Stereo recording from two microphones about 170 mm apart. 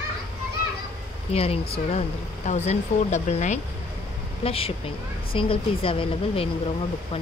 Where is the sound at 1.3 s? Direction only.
35° left (ahead or behind).